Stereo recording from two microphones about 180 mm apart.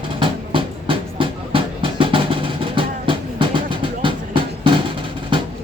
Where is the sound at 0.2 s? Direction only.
30° right (ahead or behind).